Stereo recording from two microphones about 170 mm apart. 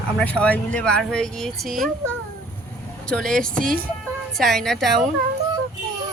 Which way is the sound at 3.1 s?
5° left (ahead or behind).